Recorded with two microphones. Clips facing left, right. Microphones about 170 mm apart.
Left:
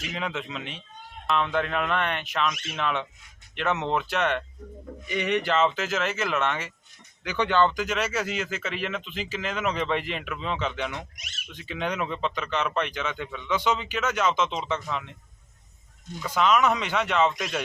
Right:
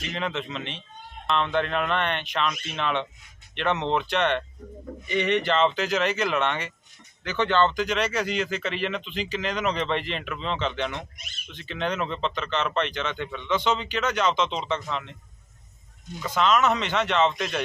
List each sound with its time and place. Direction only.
0.0 s speech: 5° left (ahead or behind)
11.2 s speech: 90° left
11.5 s speech: 10° left (ahead or behind)
16.2 s speech: 10° left (ahead or behind)